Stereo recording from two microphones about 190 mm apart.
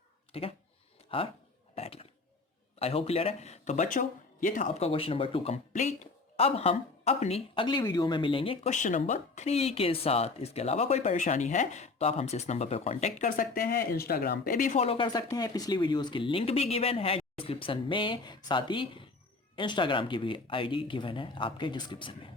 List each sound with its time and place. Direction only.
0.3 s speech: 30° left (ahead or behind)
1.7 s a sound: 30° left (ahead or behind)
2.7 s speech: 30° left (ahead or behind)